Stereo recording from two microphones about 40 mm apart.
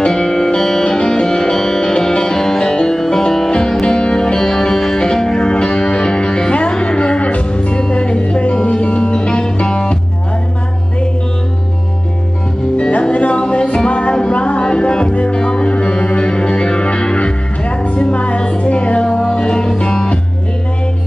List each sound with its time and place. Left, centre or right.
0.1 s music: centre
12.7 s music: left